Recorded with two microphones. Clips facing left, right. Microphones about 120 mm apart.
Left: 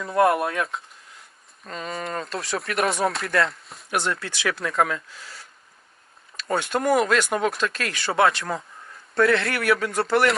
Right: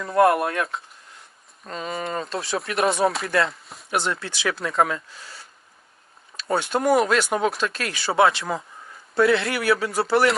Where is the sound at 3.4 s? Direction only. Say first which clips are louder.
Even; centre (ahead or behind).